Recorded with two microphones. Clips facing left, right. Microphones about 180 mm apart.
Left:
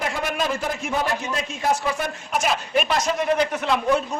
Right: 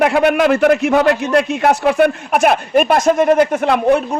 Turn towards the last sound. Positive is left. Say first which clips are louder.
# right 8 dB
turn(degrees=-60)  # may be behind; listen again after turning